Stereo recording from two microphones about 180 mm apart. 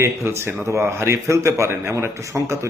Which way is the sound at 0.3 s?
15° right (ahead or behind).